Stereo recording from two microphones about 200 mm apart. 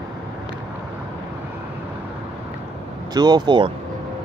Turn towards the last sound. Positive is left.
turn(degrees=-25)  # may be behind; listen again after turning